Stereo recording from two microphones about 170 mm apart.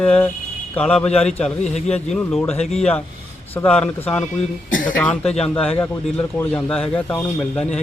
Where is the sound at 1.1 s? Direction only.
40° left (ahead or behind).